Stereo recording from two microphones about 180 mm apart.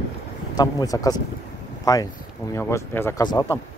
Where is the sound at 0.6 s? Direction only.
20° left (ahead or behind).